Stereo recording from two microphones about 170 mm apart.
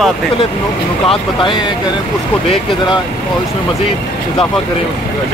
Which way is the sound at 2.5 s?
25° left (ahead or behind).